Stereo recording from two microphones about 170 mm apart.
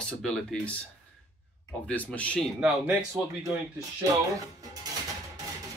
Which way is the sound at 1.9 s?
10° left (ahead or behind).